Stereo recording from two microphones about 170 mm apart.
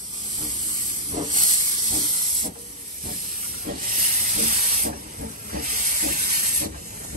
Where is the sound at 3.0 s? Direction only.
50° right (ahead or behind).